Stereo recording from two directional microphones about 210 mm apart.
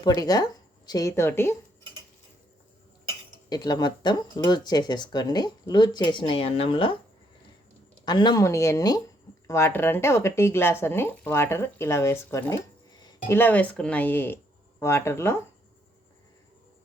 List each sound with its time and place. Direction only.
0.0 s speech: 15° left (ahead or behind)
3.5 s speech: 20° left (ahead or behind)
8.0 s speech: 20° left (ahead or behind)